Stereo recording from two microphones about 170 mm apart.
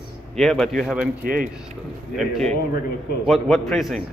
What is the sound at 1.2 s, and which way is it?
Speech, 55° right (ahead or behind).